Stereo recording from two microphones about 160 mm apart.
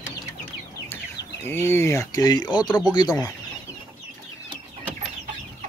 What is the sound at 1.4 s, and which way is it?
Speech, 15° left (ahead or behind).